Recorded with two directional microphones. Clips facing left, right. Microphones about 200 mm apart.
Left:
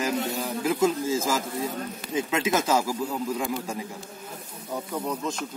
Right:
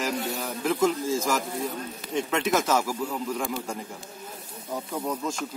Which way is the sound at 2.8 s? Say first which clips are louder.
Left 1 dB; 10° left (ahead or behind).